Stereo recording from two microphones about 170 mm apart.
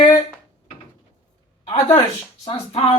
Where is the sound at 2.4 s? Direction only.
35° left (ahead or behind).